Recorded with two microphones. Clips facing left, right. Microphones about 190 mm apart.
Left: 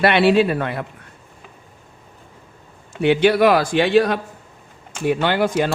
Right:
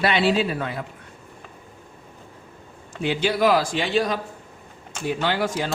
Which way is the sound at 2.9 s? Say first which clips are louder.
Left 8 dB; 65° left (ahead or behind).